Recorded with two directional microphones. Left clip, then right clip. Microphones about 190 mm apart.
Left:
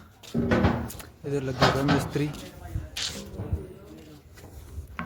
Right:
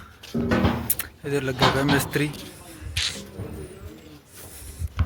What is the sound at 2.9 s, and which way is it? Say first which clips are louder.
Music: right 6 dB; 20° left (ahead or behind).